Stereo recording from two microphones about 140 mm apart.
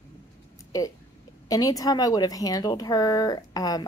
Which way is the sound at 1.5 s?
25° left (ahead or behind).